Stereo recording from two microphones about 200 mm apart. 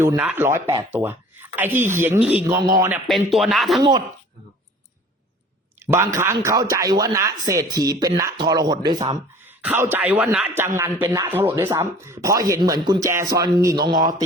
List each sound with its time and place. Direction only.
0.0 s speech: 10° right (ahead or behind)
2.6 s speech: 20° right (ahead or behind)
3.1 s speech: centre (ahead or behind)
3.8 s speech: 25° right (ahead or behind)
5.8 s speech: 15° right (ahead or behind)
9.5 s speech: 10° right (ahead or behind)